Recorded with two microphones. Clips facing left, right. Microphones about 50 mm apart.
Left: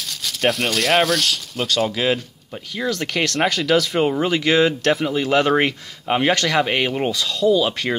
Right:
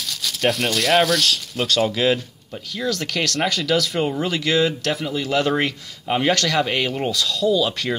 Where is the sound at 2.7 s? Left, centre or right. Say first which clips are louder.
Left 1 dB; left.